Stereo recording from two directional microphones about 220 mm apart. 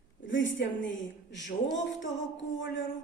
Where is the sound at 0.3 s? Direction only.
55° left (ahead or behind).